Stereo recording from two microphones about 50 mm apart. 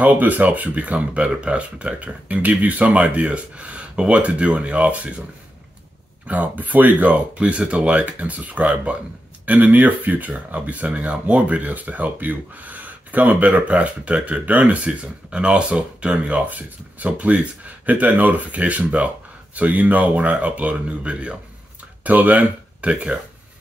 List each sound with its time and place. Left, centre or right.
0.0 s speech: right
6.2 s speech: right